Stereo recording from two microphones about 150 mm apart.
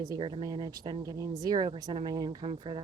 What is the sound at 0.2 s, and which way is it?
Speech, 35° right (ahead or behind).